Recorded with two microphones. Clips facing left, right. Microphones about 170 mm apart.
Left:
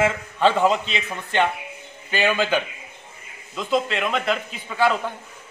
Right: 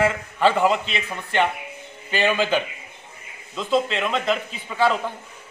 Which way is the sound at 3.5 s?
10° left (ahead or behind).